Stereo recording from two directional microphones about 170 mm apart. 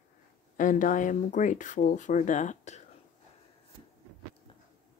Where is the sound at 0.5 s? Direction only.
50° left (ahead or behind).